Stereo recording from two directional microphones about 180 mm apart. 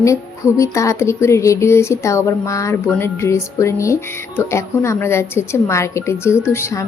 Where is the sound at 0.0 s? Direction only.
15° left (ahead or behind).